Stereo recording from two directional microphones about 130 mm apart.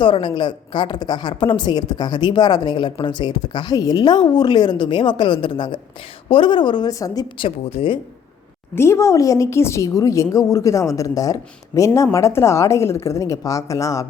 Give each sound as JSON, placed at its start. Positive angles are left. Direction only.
{"t": 0.0, "sound": "a woman's voice", "side_deg": 40}
{"t": 7.3, "sound": "speech", "side_deg": 45}
{"t": 8.7, "sound": "a woman's voice", "side_deg": 20}